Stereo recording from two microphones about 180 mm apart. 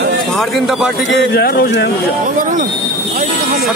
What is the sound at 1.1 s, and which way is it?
Speech, 65° left (ahead or behind).